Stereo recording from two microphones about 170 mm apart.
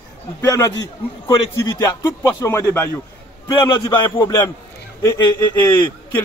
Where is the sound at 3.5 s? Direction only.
25° left (ahead or behind).